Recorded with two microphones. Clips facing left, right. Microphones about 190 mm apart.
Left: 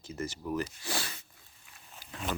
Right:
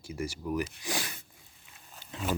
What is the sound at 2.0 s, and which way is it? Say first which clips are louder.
Wild animals: right 3 dB; centre (ahead or behind).